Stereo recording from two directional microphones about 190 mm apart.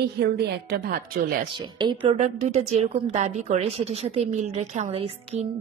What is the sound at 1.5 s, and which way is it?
Speech, 25° right (ahead or behind).